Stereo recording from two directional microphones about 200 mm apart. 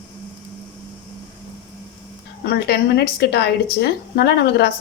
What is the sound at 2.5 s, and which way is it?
A woman's voice, 55° left (ahead or behind).